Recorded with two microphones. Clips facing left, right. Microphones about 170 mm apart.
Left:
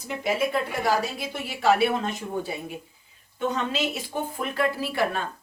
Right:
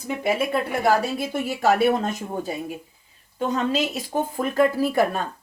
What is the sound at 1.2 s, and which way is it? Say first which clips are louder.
Speech: right 4 dB; 50° right (ahead or behind).